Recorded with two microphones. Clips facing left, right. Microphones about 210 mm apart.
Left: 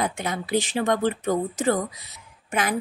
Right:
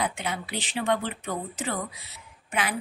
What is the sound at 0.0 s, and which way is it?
A woman's voice, 45° left (ahead or behind).